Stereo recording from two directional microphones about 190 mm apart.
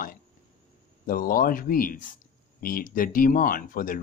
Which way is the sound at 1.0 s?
50° left (ahead or behind).